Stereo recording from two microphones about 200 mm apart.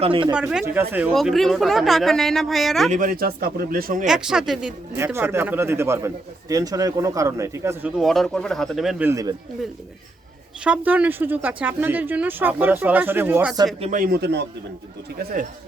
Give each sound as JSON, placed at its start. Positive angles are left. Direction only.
{"t": 0.0, "sound": "speech", "side_deg": -25}
{"t": 0.3, "sound": "speech", "side_deg": -5}
{"t": 2.9, "sound": "speech", "side_deg": -45}
{"t": 4.0, "sound": "speech", "side_deg": -5}
{"t": 4.9, "sound": "speech", "side_deg": -10}
{"t": 10.6, "sound": "speech", "side_deg": -5}
{"t": 13.8, "sound": "speech", "side_deg": -40}
{"t": 15.2, "sound": "speech", "side_deg": -45}